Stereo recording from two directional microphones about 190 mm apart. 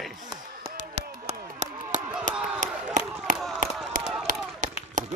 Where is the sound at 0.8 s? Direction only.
40° right (ahead or behind).